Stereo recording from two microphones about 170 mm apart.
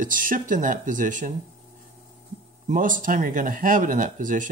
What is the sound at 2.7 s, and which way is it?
Speech, 50° right (ahead or behind).